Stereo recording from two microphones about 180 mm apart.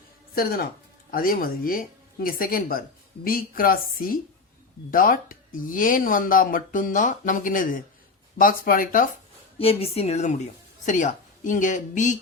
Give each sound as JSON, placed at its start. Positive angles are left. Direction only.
{"t": 0.3, "sound": "speech", "side_deg": 55}
{"t": 9.6, "sound": "a woman's voice", "side_deg": 35}